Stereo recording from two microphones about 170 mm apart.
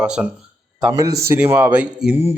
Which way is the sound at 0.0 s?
5° right (ahead or behind).